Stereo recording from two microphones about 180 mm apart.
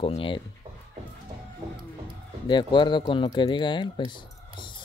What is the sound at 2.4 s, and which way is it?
Speech, 25° left (ahead or behind).